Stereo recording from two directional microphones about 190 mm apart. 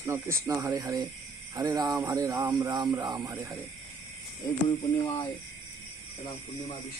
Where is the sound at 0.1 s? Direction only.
15° right (ahead or behind).